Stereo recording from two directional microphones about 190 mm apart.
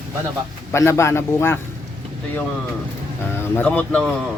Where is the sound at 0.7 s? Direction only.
15° left (ahead or behind).